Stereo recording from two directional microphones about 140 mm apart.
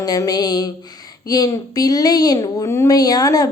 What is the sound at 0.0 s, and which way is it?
Speech, 25° left (ahead or behind).